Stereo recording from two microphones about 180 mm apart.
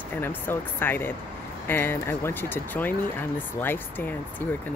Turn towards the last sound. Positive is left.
turn(degrees=10)  # may be behind; listen again after turning